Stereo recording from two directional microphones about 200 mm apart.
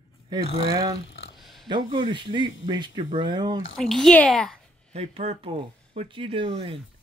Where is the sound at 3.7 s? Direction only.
Centre (ahead or behind).